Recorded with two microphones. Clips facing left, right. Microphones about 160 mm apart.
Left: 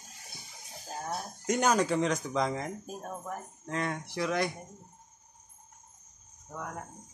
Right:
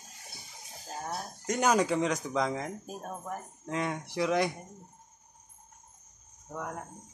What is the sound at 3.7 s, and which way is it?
Speech, 10° right (ahead or behind).